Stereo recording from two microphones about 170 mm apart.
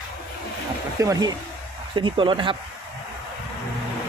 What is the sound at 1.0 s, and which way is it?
Speech, 20° right (ahead or behind).